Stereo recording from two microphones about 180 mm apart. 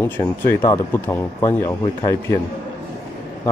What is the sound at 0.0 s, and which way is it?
Speech, 15° left (ahead or behind).